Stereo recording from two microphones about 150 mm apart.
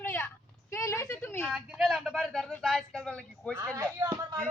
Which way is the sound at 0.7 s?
20° left (ahead or behind).